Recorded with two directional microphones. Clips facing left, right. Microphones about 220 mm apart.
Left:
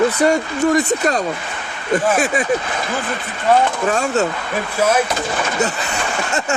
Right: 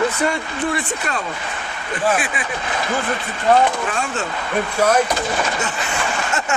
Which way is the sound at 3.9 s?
40° left (ahead or behind).